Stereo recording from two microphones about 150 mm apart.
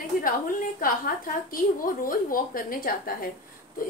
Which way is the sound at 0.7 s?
70° left (ahead or behind).